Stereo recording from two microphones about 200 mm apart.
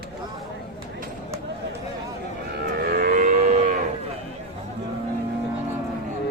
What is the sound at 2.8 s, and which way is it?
Livestock, 50° right (ahead or behind).